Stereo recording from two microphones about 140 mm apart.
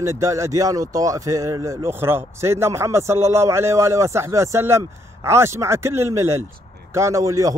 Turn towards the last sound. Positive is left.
turn(degrees=-25)  # may be behind; listen again after turning